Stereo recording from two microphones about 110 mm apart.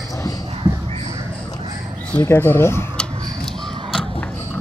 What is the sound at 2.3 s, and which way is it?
Speech, 25° left (ahead or behind).